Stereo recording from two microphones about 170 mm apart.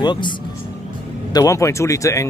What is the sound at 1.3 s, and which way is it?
Speech, 20° left (ahead or behind).